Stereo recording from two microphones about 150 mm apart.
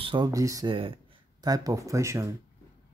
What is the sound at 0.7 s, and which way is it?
Speech, 35° right (ahead or behind).